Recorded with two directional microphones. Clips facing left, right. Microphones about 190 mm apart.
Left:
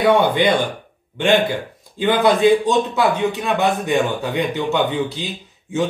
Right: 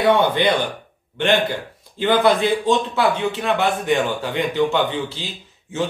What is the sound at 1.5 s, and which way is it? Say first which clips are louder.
A man's voice: left 3 dB; 15° left (ahead or behind).